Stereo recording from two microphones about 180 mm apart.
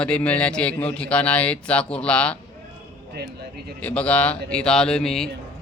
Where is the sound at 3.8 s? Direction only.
5° left (ahead or behind).